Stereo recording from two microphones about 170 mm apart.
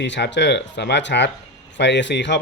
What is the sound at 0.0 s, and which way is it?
Speech, 90° left.